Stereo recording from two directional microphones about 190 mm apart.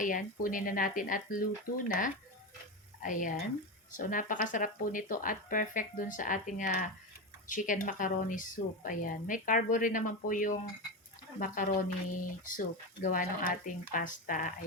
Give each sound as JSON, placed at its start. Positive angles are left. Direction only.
{"t": 0.0, "sound": "a woman's voice", "side_deg": 45}